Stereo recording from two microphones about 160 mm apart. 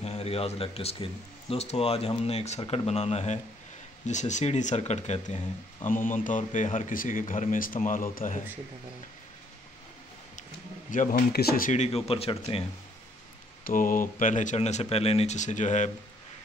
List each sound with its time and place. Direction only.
0.0 s speech: 40° left (ahead or behind); by 8.4 s 60° left (ahead or behind)
10.9 s speech: 55° left (ahead or behind)
11.3 s speech: 70° left (ahead or behind)
11.7 s speech: 45° left (ahead or behind)
13.7 s speech: 60° left (ahead or behind)